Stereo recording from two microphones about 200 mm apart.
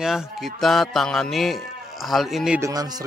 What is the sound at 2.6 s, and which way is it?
Speech, 15° right (ahead or behind).